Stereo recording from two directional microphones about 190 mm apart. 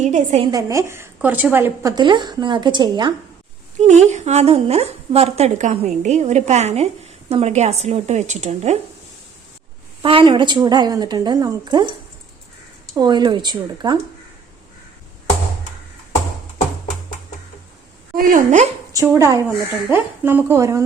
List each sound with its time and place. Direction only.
0.0 s a woman's voice: 40° right (ahead or behind)
0.4 s a woman's voice: 20° right (ahead or behind)
2.0 s a woman's voice: 25° right (ahead or behind)
3.8 s a woman's voice: 40° right (ahead or behind)
10.0 s a woman's voice: 25° right (ahead or behind)
13.0 s a woman's voice: 25° right (ahead or behind)
18.1 s speech: 45° right (ahead or behind)
18.9 s a woman's voice: 15° right (ahead or behind)